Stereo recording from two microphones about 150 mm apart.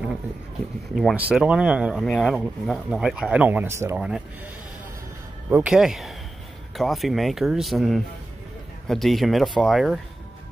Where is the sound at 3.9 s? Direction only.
5° right (ahead or behind).